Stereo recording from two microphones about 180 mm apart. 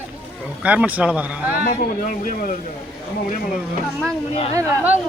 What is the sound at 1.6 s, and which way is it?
Speech, 50° left (ahead or behind).